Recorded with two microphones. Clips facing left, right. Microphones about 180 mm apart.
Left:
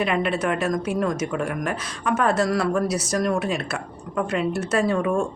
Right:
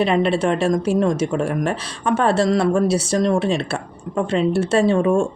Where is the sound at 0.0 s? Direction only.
30° right (ahead or behind).